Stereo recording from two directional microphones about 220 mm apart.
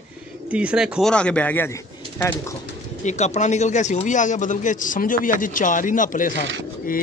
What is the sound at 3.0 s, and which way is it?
Speech, 30° left (ahead or behind).